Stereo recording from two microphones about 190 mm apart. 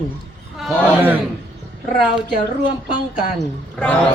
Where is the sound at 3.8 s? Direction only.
5° left (ahead or behind).